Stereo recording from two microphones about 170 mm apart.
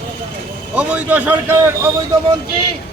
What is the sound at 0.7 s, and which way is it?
Speech, 10° right (ahead or behind).